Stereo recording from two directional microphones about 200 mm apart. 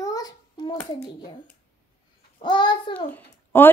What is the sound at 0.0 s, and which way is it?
Hands, 20° left (ahead or behind).